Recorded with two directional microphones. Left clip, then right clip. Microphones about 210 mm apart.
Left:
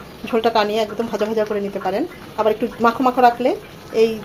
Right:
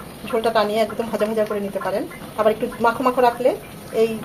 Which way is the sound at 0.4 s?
25° left (ahead or behind).